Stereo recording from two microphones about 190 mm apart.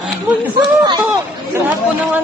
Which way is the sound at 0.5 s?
25° right (ahead or behind).